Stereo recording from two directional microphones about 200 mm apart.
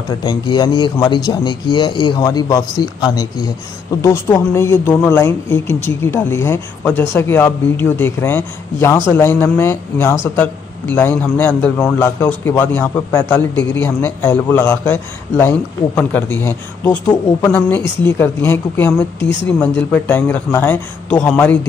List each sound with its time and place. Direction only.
0.2 s a man's voice: 20° left (ahead or behind)